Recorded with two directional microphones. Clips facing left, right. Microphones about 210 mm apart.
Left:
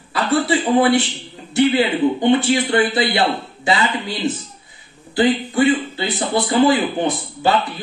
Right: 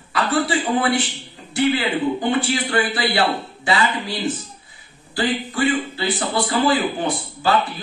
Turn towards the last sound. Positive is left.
turn(degrees=20)  # may be behind; listen again after turning